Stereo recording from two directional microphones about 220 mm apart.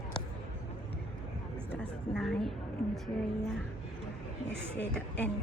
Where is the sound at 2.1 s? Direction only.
5° left (ahead or behind).